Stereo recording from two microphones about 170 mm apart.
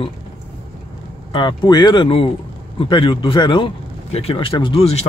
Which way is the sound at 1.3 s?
25° left (ahead or behind).